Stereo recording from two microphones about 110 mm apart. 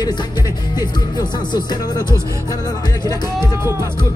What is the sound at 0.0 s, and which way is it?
Music, 40° left (ahead or behind).